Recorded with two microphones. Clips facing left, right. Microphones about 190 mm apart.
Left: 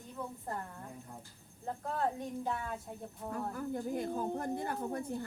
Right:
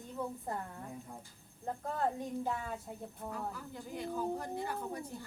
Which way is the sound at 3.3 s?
50° left (ahead or behind).